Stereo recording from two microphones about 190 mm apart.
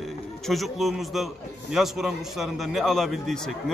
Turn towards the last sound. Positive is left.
turn(degrees=0)  # may be behind; listen again after turning